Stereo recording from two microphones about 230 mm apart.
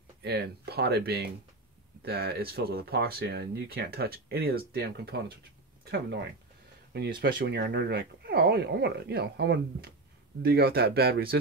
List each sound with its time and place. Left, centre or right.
0.2 s speech: right